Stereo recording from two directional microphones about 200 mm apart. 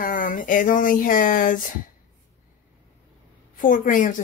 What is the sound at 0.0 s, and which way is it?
Speech, 45° left (ahead or behind).